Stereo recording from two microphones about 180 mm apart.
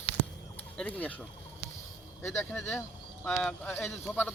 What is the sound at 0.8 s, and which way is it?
Speech, 10° left (ahead or behind).